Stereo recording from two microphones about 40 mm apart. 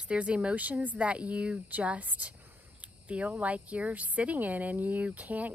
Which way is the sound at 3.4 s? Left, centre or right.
Right.